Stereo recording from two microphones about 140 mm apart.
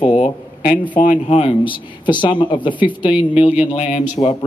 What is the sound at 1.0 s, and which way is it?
Speech, 65° left (ahead or behind).